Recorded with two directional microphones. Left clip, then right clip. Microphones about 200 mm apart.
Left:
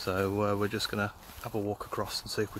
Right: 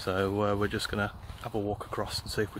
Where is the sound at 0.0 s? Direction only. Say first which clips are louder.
Right 1 dB; 5° right (ahead or behind).